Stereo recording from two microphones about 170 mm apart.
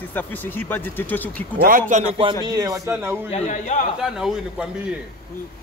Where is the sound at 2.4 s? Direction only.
20° right (ahead or behind).